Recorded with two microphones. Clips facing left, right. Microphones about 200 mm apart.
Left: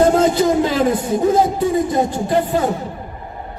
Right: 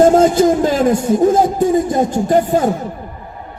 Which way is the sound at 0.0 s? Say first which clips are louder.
Right 4 dB; 45° right (ahead or behind).